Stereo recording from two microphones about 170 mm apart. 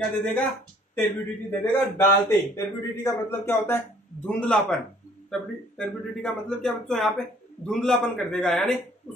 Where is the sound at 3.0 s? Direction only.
15° left (ahead or behind).